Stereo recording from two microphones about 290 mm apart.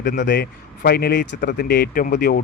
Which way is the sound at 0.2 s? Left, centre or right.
Left.